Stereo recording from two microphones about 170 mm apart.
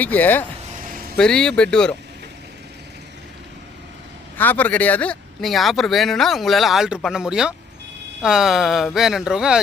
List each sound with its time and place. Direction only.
0.0 s speech: 10° left (ahead or behind)
0.9 s vehicle: 55° right (ahead or behind)
1.1 s speech: 5° left (ahead or behind)
4.4 s speech: 10° left (ahead or behind)